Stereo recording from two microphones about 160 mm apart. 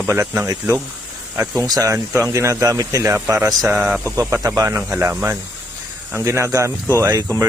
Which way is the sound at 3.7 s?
5° right (ahead or behind).